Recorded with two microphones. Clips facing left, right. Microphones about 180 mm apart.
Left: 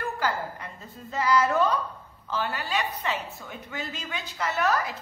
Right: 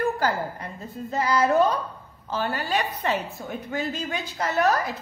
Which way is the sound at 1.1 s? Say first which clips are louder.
Right 2 dB; 35° right (ahead or behind).